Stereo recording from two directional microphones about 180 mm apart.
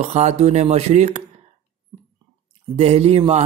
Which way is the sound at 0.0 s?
35° right (ahead or behind).